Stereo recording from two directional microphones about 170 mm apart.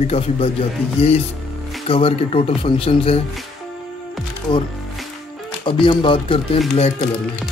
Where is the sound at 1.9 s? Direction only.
35° left (ahead or behind).